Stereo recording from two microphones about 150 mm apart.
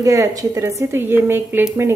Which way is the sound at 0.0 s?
20° right (ahead or behind).